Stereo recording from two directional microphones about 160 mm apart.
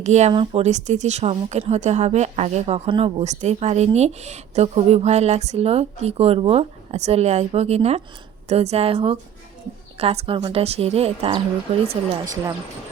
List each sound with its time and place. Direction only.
0.0 s a woman's voice: 45° right (ahead or behind)